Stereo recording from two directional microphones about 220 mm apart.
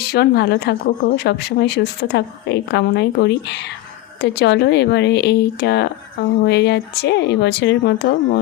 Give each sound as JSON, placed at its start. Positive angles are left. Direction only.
{"t": 0.0, "sound": "speech", "side_deg": 45}